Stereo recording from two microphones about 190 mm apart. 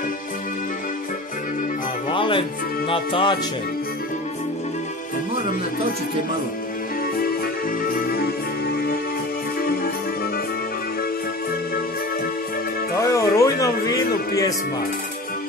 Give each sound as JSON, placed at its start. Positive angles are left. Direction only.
{"t": 2.0, "sound": "music", "side_deg": 25}
{"t": 7.9, "sound": "music", "side_deg": 55}
{"t": 13.0, "sound": "a sound", "side_deg": 15}